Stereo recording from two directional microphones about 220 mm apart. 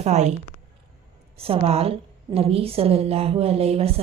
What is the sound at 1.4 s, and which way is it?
A woman's voice, 25° right (ahead or behind).